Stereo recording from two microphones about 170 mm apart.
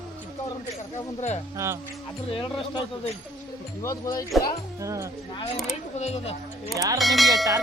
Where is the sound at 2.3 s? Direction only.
30° left (ahead or behind).